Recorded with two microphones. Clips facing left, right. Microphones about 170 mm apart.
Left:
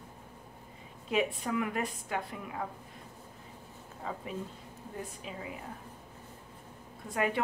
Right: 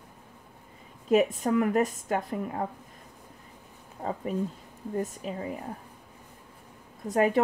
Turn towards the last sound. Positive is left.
turn(degrees=-40)  # may be behind; listen again after turning